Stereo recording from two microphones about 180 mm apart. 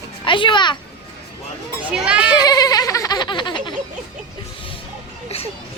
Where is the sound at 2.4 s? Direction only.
20° left (ahead or behind).